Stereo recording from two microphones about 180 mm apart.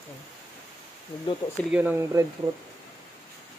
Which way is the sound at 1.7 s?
10° right (ahead or behind).